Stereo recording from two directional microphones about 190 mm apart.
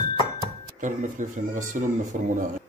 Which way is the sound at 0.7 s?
40° right (ahead or behind).